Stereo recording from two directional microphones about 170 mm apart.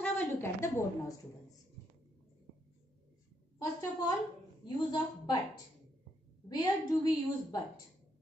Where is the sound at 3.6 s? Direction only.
20° left (ahead or behind).